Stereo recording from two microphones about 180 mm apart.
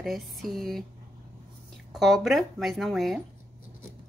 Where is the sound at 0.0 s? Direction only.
Centre (ahead or behind).